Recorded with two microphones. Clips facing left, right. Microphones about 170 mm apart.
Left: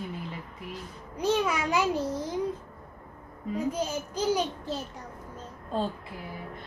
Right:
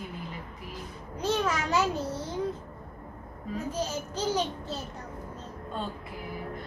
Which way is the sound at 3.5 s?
10° left (ahead or behind).